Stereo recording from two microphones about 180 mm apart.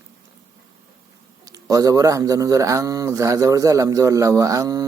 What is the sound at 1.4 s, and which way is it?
Speech, 20° right (ahead or behind).